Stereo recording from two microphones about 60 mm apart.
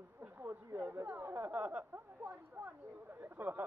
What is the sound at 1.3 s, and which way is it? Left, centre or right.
Snicker, right.